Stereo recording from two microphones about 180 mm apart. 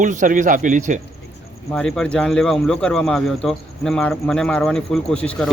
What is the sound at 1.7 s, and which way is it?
Speech, 5° left (ahead or behind).